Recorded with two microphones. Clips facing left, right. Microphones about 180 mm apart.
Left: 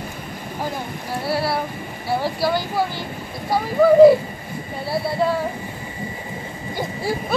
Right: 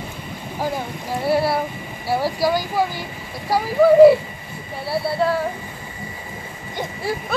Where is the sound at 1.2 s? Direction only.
15° right (ahead or behind).